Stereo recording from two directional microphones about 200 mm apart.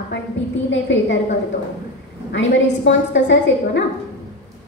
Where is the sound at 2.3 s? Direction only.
65° left (ahead or behind).